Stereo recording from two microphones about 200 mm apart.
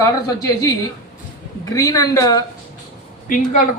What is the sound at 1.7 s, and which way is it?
Speech, 15° left (ahead or behind).